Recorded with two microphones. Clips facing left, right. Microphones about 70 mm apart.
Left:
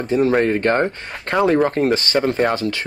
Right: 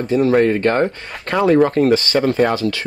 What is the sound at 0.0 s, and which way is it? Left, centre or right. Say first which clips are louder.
Speech: right 2 dB; left.